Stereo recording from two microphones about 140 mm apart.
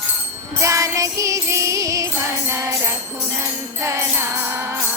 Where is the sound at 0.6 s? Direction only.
25° right (ahead or behind).